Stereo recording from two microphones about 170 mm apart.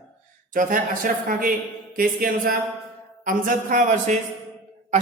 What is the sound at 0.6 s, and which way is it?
A man's voice, 55° right (ahead or behind).